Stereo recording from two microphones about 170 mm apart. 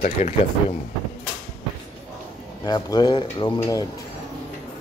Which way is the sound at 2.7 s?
25° left (ahead or behind).